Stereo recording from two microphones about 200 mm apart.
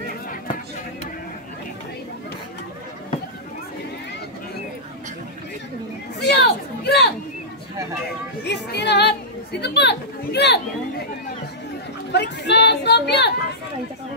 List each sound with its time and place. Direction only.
6.1 s chatter: 55° left (ahead or behind)
8.5 s chatter: 55° left (ahead or behind)
12.1 s a sound: 60° left (ahead or behind)